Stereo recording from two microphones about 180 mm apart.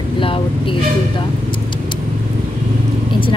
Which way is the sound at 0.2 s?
30° left (ahead or behind).